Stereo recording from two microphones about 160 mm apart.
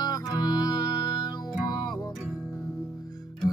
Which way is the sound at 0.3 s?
25° left (ahead or behind).